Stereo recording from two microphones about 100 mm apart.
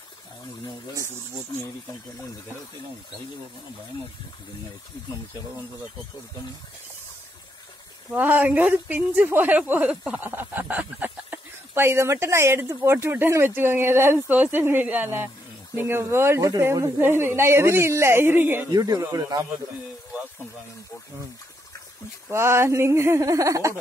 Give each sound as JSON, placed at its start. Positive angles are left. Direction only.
{"t": 8.1, "sound": "a man's voice", "side_deg": -20}
{"t": 17.0, "sound": "a man's voice", "side_deg": -20}
{"t": 18.7, "sound": "speech", "side_deg": -40}
{"t": 22.3, "sound": "a man's voice", "side_deg": -25}